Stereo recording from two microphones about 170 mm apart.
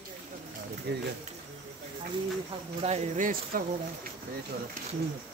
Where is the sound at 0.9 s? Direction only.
75° right (ahead or behind).